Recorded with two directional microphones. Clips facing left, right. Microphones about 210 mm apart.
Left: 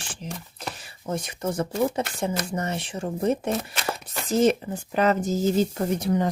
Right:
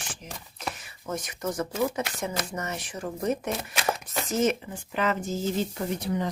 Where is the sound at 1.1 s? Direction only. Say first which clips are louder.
Left 3 dB; 30° left (ahead or behind).